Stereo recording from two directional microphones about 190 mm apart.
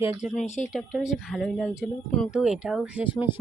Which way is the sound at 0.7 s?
Centre (ahead or behind).